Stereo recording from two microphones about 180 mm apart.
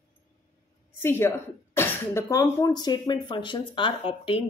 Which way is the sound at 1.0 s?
15° left (ahead or behind).